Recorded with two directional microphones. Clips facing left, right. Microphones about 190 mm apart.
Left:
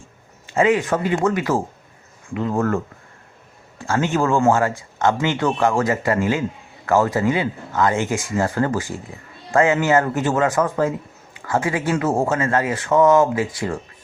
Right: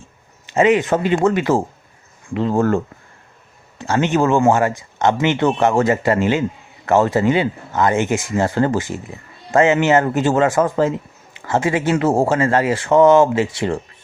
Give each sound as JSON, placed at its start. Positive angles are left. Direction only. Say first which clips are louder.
{"t": 0.4, "sound": "speech", "louder": "right 3 dB", "side_deg": -20}